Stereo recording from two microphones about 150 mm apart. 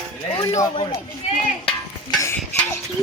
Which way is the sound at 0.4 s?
20° left (ahead or behind).